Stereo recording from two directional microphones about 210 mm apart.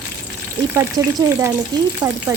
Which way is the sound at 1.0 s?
20° right (ahead or behind).